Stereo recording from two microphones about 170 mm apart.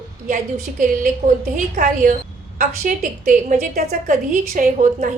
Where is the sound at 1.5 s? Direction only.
50° right (ahead or behind).